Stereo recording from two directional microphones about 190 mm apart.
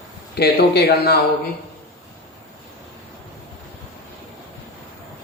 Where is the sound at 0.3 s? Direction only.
60° left (ahead or behind).